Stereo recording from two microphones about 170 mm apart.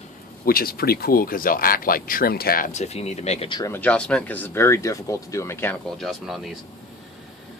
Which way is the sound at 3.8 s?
5° left (ahead or behind).